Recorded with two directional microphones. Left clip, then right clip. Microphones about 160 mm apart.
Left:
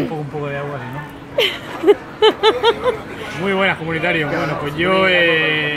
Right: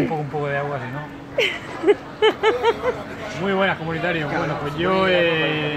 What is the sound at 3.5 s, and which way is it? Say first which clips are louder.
A man's voice: left 4 dB; 5° left (ahead or behind).